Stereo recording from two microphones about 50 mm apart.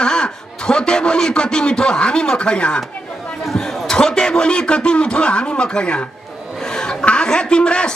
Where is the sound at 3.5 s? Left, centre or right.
Centre.